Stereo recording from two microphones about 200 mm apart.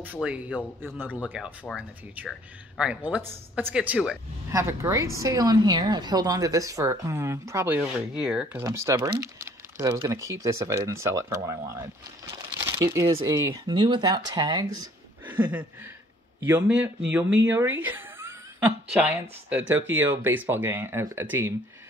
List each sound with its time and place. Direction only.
0.0 s speech: 5° right (ahead or behind)
0.6 s speech: 5° left (ahead or behind)
1.0 s speech: 10° right (ahead or behind)
8.6 s speech: 15° right (ahead or behind)
10.2 s speech: 15° right (ahead or behind)